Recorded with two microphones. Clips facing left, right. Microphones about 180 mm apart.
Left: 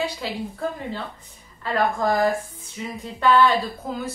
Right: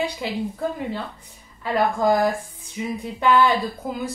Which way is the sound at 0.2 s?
15° right (ahead or behind).